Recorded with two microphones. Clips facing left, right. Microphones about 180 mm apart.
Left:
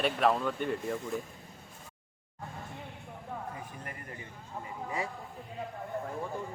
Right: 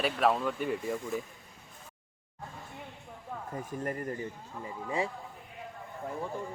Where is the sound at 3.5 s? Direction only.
45° right (ahead or behind).